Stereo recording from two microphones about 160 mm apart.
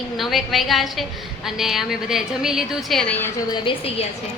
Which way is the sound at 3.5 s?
35° left (ahead or behind).